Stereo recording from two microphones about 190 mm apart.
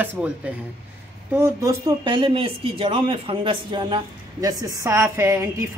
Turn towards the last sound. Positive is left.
turn(degrees=-15)  # may be behind; listen again after turning